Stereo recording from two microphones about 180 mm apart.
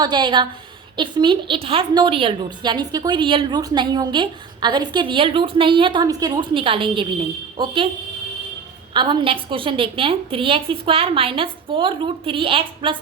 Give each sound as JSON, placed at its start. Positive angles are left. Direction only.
{"t": 0.0, "sound": "a woman's voice", "side_deg": -25}
{"t": 8.9, "sound": "a woman's voice", "side_deg": -25}